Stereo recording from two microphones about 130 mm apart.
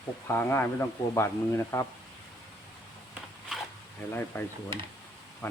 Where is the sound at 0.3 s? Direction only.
15° left (ahead or behind).